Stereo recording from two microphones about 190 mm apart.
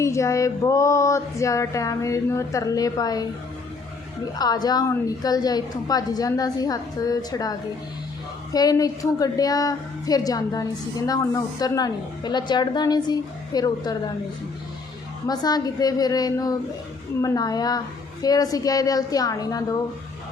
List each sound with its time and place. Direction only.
0.0 s female singing: 15° left (ahead or behind)
4.4 s a woman's voice: 20° left (ahead or behind)
8.5 s a woman's voice: 20° left (ahead or behind)
15.3 s a woman's voice: 20° left (ahead or behind)